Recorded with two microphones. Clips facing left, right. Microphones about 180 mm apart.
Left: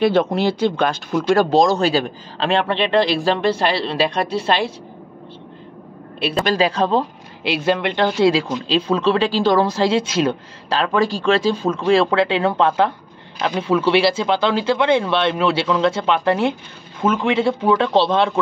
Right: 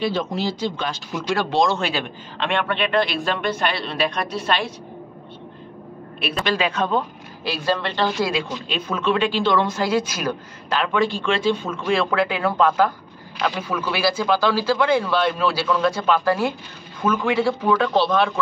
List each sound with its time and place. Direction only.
0.0 s speech: 60° left (ahead or behind)
1.1 s speech: 45° left (ahead or behind); by 4.7 s 30° left (ahead or behind)
6.1 s a man's voice: 30° left (ahead or behind)
8.6 s speech: 30° left (ahead or behind)